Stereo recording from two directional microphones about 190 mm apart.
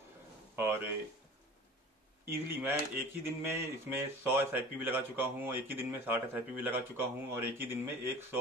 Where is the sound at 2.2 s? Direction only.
10° right (ahead or behind).